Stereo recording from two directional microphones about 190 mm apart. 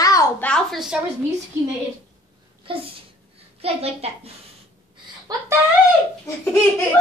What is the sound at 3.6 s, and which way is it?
Speech, 30° right (ahead or behind).